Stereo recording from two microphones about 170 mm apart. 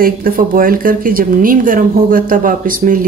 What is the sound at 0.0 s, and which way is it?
A woman's voice, 55° right (ahead or behind).